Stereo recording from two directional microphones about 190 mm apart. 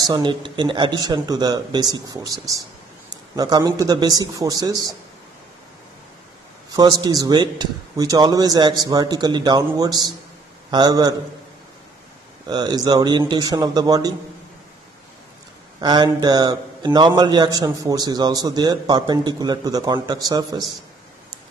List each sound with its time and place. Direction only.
0.0 s a man's voice: 20° right (ahead or behind)
6.7 s a man's voice: 20° right (ahead or behind)
12.4 s a man's voice: 20° right (ahead or behind)
15.8 s a man's voice: 20° right (ahead or behind)